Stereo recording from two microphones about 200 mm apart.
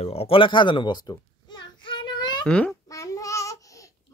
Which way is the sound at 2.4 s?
5° left (ahead or behind).